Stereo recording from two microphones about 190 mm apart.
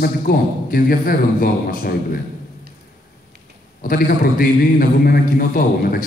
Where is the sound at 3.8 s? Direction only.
50° left (ahead or behind).